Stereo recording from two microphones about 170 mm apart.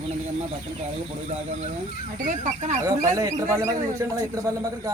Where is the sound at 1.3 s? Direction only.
40° right (ahead or behind).